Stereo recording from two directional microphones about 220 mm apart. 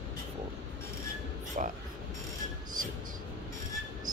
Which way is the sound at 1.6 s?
35° right (ahead or behind).